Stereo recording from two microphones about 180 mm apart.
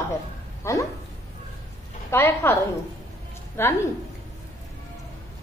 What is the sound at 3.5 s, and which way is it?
Speech, 15° left (ahead or behind).